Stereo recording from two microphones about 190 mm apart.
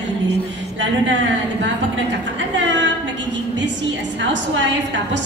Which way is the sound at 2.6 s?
70° right (ahead or behind).